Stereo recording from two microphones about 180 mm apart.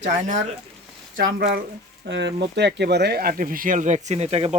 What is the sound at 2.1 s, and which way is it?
Speech, 75° right (ahead or behind).